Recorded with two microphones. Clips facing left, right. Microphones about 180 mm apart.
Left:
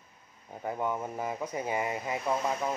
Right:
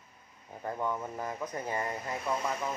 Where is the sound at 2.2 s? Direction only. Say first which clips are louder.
Left 3 dB; 25° left (ahead or behind).